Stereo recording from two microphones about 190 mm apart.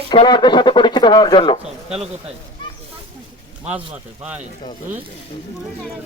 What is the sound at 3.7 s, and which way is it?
Speech, 5° right (ahead or behind).